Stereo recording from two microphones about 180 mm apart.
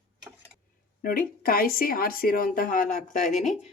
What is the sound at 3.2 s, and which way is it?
Speech, centre (ahead or behind).